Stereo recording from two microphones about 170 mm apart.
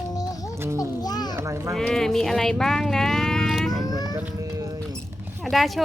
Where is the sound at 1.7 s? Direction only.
5° left (ahead or behind).